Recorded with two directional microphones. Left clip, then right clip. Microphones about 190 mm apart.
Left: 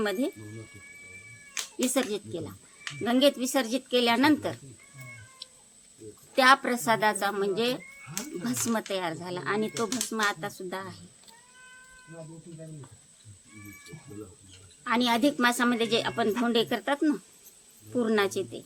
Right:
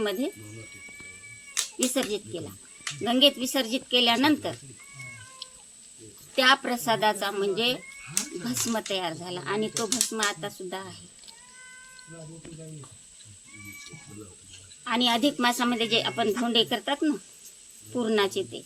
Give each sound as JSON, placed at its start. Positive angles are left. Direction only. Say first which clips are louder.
{"t": 0.0, "sound": "speech", "louder": "even", "side_deg": 10}
{"t": 1.6, "sound": "cat", "louder": "right 5 dB", "side_deg": -60}
{"t": 2.0, "sound": "speech", "louder": "even", "side_deg": 10}
{"t": 5.4, "sound": "cat", "louder": "right 3 dB", "side_deg": 10}
{"t": 6.3, "sound": "speech", "louder": "left 1 dB", "side_deg": 10}
{"t": 14.8, "sound": "speech", "louder": "right 1 dB", "side_deg": 10}